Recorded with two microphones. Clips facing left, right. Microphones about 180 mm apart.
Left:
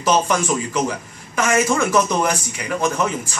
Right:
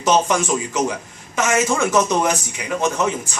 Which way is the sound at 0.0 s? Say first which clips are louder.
Right 1 dB; 20° right (ahead or behind).